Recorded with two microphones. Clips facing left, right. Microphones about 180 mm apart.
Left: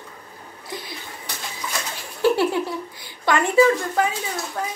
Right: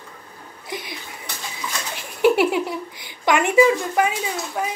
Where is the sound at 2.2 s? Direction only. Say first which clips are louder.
Right 2 dB; 20° right (ahead or behind).